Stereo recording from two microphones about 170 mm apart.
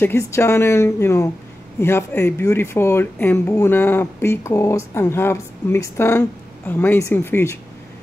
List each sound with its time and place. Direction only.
0.0 s speech: 15° left (ahead or behind)